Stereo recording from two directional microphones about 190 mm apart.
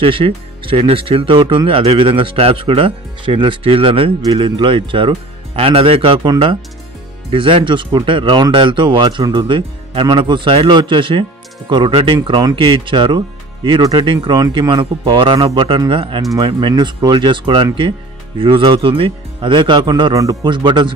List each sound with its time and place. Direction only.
0.0 s speech: 25° right (ahead or behind)